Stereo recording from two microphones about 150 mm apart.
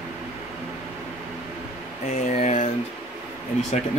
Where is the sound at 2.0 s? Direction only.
45° left (ahead or behind).